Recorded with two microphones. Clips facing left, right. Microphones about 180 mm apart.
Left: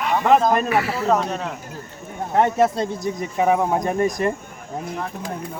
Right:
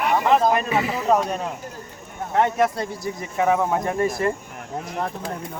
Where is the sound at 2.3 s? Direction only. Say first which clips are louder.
Left 2 dB; 25° left (ahead or behind).